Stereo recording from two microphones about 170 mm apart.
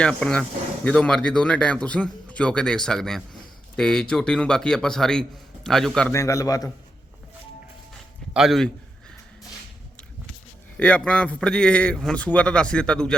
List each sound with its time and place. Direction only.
0.0 s a man's voice: 5° left (ahead or behind)
6.1 s a man's voice: 20° left (ahead or behind)
8.3 s a man's voice: centre (ahead or behind)
10.8 s a man's voice: 5° left (ahead or behind)